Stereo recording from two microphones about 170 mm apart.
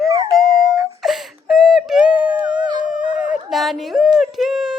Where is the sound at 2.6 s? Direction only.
25° right (ahead or behind).